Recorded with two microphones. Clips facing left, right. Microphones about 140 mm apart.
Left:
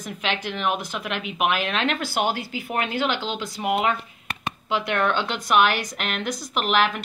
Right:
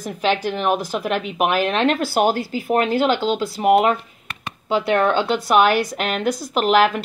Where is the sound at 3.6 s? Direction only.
45° right (ahead or behind).